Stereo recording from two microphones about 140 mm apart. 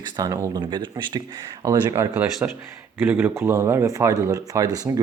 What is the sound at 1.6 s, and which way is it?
Speech, 20° right (ahead or behind).